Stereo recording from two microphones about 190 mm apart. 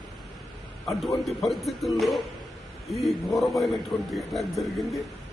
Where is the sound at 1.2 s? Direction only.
Centre (ahead or behind).